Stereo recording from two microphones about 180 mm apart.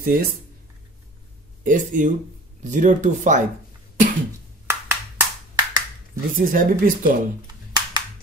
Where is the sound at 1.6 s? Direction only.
45° right (ahead or behind).